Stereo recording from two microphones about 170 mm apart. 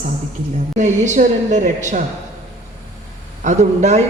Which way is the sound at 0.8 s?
45° right (ahead or behind).